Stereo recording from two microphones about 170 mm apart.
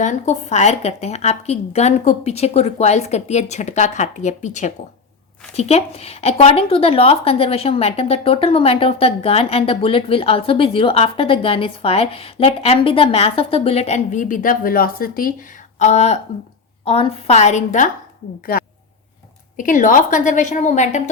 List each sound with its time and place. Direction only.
0.0 s a woman's voice: 45° left (ahead or behind)
15.8 s a woman's voice: 40° left (ahead or behind)
18.5 s a sound: 60° left (ahead or behind)
19.5 s a woman's voice: 50° left (ahead or behind)